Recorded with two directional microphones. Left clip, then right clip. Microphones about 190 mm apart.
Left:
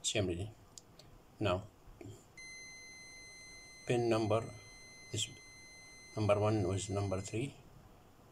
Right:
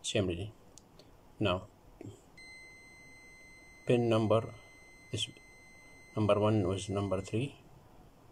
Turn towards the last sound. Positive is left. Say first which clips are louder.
# right 4 dB
turn(degrees=-15)  # may be behind; listen again after turning